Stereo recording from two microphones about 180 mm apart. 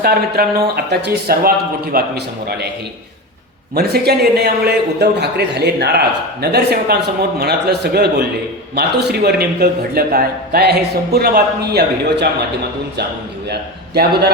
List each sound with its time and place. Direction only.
0.0 s a man's voice: 60° right (ahead or behind)
3.8 s a man's voice: 65° right (ahead or behind)